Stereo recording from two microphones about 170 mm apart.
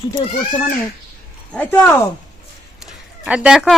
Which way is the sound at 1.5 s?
10° left (ahead or behind).